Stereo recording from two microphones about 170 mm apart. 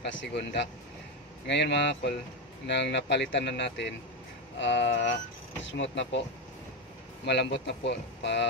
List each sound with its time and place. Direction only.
0.0 s speech: 90° left
7.2 s speech: 90° left